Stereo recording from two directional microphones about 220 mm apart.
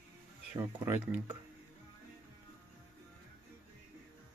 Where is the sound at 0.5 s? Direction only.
10° right (ahead or behind).